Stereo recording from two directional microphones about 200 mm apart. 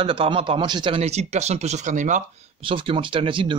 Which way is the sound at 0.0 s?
25° right (ahead or behind).